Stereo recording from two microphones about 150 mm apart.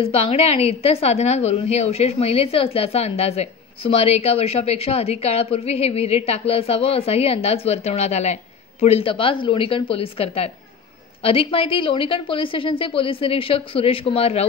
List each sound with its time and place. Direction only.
0.0 s a woman's voice: 40° left (ahead or behind)